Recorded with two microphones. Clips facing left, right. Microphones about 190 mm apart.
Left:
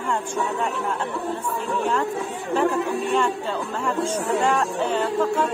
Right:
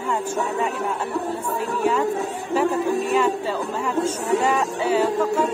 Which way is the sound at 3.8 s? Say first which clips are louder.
Even; 5° right (ahead or behind).